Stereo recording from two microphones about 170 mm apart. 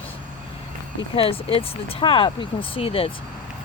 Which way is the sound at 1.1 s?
35° left (ahead or behind).